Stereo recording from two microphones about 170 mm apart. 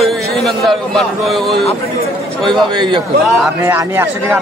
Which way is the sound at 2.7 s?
25° right (ahead or behind).